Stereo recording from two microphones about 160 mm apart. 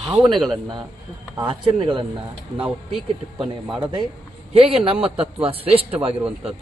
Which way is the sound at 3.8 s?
30° right (ahead or behind).